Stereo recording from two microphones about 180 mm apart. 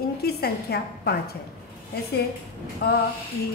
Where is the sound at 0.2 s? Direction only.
60° left (ahead or behind).